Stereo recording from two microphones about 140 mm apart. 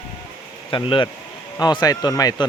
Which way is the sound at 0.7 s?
35° left (ahead or behind).